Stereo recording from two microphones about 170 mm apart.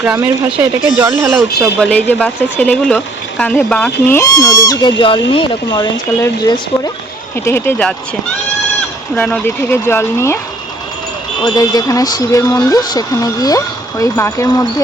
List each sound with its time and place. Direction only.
0.6 s speech: 15° right (ahead or behind)
1.3 s speech: centre (ahead or behind); by 6.9 s 20° left (ahead or behind)
7.4 s speech: 10° left (ahead or behind)
9.1 s speech: 10° left (ahead or behind)
11.4 s speech: 20° left (ahead or behind)